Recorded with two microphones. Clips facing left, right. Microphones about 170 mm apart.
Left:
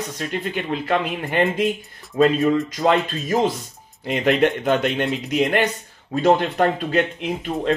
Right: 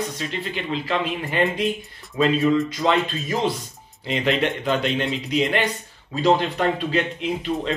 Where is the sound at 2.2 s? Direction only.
45° left (ahead or behind).